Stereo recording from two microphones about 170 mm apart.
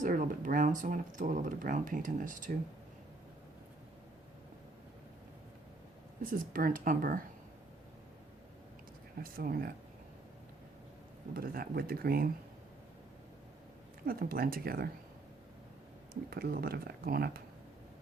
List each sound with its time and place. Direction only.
0.0 s speech: 50° right (ahead or behind)
6.3 s speech: 55° right (ahead or behind)
9.2 s speech: 60° right (ahead or behind)
11.3 s speech: 60° right (ahead or behind)
14.0 s speech: 60° right (ahead or behind)
16.3 s speech: 65° right (ahead or behind)